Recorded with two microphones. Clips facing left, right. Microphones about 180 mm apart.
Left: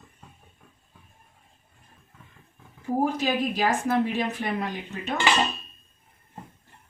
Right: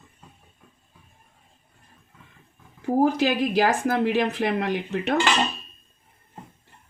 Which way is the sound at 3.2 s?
75° right (ahead or behind).